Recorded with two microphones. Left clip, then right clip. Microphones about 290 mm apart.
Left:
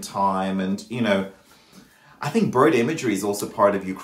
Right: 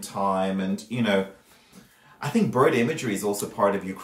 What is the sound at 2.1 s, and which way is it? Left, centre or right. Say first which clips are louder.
Speech: left 3 dB; centre.